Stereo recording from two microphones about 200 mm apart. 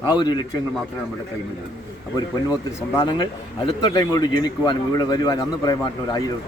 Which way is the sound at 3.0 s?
25° left (ahead or behind).